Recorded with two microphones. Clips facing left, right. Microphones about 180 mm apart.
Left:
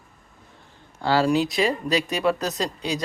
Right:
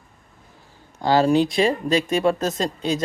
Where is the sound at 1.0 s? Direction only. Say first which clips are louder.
Right 3 dB; 20° right (ahead or behind).